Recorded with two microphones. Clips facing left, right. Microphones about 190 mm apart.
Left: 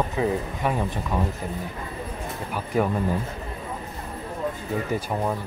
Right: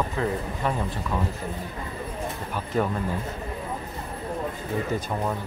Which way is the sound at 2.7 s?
10° left (ahead or behind).